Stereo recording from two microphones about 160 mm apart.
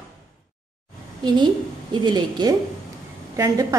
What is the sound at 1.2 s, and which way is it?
A woman's voice, 30° right (ahead or behind).